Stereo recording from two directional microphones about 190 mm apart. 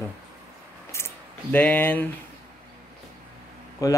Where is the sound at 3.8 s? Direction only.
15° left (ahead or behind).